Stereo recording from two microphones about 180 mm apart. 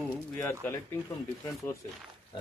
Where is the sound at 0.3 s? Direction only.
15° left (ahead or behind).